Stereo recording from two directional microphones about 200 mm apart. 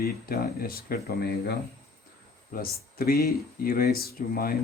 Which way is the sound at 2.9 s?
50° left (ahead or behind).